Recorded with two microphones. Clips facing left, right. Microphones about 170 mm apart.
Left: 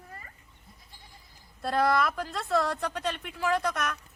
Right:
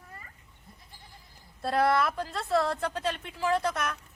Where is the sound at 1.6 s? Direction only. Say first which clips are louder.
Even; 25° right (ahead or behind).